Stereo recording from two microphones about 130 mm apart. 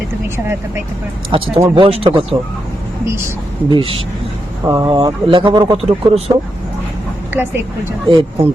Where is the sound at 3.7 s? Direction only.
45° right (ahead or behind).